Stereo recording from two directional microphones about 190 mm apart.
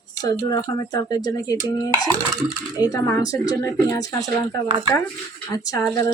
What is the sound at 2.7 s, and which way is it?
A woman's voice, 15° left (ahead or behind).